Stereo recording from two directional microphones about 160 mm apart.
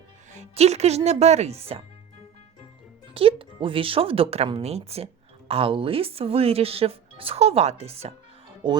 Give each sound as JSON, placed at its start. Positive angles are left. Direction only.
{"t": 0.3, "sound": "speech", "side_deg": -45}
{"t": 3.2, "sound": "speech", "side_deg": -35}